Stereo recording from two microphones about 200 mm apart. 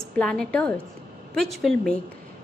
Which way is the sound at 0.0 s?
5° left (ahead or behind).